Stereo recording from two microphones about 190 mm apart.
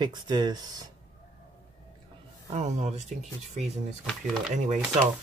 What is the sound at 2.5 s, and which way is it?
Speech, 35° right (ahead or behind).